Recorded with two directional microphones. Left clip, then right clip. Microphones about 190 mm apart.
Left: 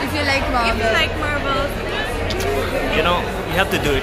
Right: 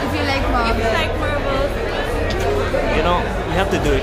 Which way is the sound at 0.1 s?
35° left (ahead or behind).